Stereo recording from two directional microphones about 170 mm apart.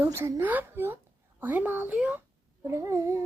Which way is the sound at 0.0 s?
15° right (ahead or behind).